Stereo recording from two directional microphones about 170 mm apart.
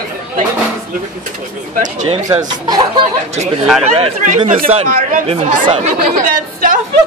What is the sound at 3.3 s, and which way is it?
Speech, 40° right (ahead or behind).